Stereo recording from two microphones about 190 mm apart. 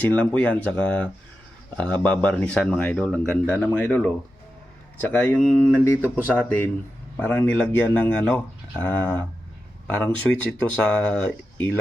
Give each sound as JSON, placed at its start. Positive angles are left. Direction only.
{"t": 0.0, "sound": "speech", "side_deg": 5}